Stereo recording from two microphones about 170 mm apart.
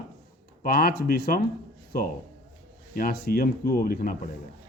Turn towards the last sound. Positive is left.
turn(degrees=60)  # may be behind; listen again after turning